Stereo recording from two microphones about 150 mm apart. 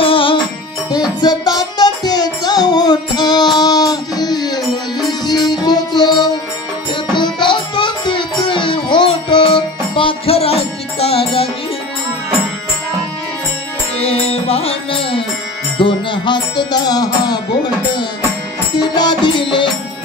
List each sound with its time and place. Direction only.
0.0 s music: 35° left (ahead or behind)
1.2 s music: 25° left (ahead or behind); by 11.4 s 40° left (ahead or behind)
14.0 s music: 40° left (ahead or behind); by 17.4 s 25° left (ahead or behind)
18.8 s music: 30° left (ahead or behind)